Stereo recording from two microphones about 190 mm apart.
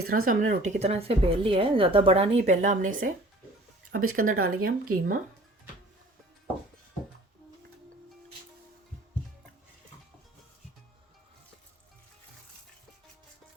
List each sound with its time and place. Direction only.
0.0 s a woman's voice: 50° right (ahead or behind)
4.0 s speech: 90° right
4.5 s speech: 50° right (ahead or behind)